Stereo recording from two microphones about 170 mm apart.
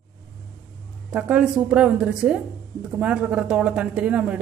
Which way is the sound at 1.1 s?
5° right (ahead or behind).